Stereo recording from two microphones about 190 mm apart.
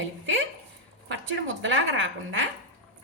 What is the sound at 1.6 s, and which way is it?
Speech, 75° right (ahead or behind).